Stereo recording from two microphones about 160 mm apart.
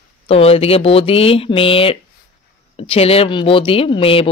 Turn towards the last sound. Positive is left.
turn(degrees=35)  # may be behind; listen again after turning